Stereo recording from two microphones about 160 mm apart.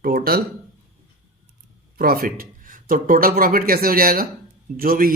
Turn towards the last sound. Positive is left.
turn(degrees=-65)  # may be behind; listen again after turning